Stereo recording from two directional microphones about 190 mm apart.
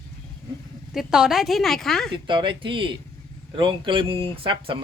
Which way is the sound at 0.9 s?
Centre (ahead or behind).